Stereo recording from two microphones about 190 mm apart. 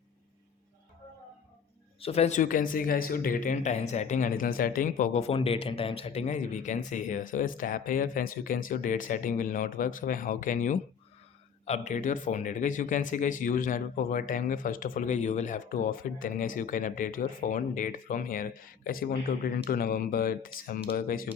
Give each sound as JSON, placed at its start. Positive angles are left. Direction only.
{"t": 2.0, "sound": "speech", "side_deg": 30}
{"t": 5.3, "sound": "speech", "side_deg": 30}